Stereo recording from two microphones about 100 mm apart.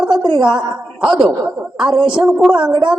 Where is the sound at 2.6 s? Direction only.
45° right (ahead or behind).